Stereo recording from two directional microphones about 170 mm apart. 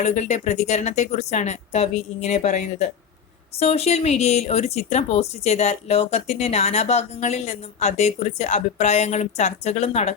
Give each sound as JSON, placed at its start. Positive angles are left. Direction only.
{"t": 0.0, "sound": "speech", "side_deg": 40}